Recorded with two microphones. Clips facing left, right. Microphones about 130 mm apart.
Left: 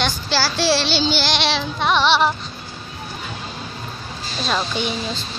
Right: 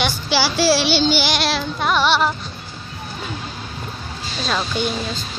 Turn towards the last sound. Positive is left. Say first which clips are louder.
# right 1 dB
turn(degrees=0)  # may be behind; listen again after turning